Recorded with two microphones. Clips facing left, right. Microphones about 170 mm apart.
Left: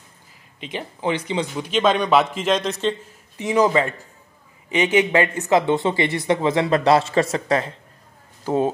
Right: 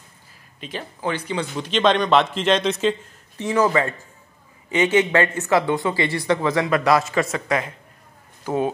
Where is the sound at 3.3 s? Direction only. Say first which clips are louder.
Left 1 dB; 15° left (ahead or behind).